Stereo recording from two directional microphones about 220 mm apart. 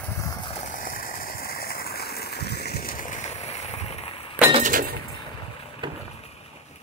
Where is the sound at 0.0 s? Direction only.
15° left (ahead or behind).